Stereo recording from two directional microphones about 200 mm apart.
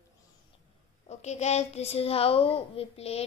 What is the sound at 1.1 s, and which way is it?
A child's voice, 35° left (ahead or behind).